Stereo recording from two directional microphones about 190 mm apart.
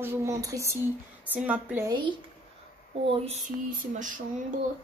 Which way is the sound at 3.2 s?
40° right (ahead or behind).